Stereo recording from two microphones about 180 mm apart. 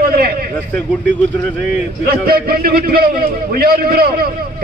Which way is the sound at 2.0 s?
55° right (ahead or behind).